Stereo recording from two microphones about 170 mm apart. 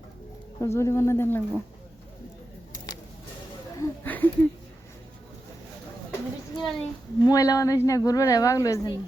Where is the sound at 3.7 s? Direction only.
15° left (ahead or behind).